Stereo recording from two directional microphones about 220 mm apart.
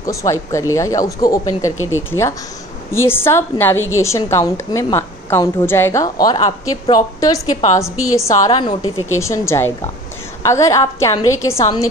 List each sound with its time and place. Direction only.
0.0 s a woman's voice: 15° left (ahead or behind)